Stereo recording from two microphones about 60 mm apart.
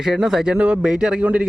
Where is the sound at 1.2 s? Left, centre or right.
Right.